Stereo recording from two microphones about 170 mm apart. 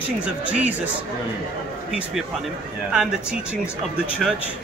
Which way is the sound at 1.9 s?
5° right (ahead or behind).